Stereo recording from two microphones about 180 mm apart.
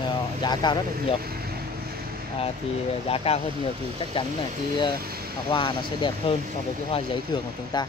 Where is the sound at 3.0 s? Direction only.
35° left (ahead or behind).